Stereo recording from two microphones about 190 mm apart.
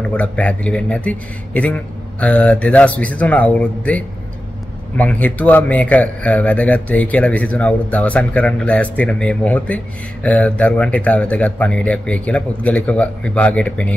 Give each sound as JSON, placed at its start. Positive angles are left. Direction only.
{"t": 0.1, "sound": "a man's voice", "side_deg": 5}